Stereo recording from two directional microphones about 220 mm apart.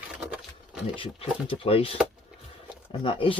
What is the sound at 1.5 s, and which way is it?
Speech, 25° left (ahead or behind).